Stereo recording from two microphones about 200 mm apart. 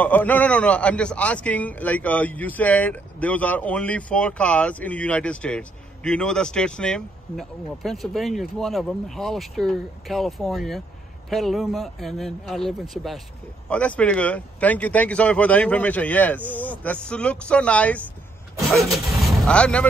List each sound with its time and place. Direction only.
0.0 s a man's voice: 10° left (ahead or behind)